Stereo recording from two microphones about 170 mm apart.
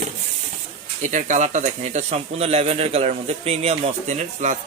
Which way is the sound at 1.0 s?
45° right (ahead or behind).